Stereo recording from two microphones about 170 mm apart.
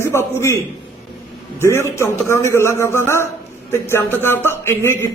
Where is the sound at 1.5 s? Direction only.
15° left (ahead or behind).